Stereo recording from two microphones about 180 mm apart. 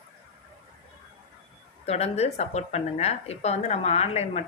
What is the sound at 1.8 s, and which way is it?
Speech, 35° left (ahead or behind).